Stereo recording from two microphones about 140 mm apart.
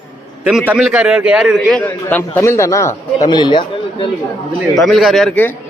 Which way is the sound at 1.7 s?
10° left (ahead or behind).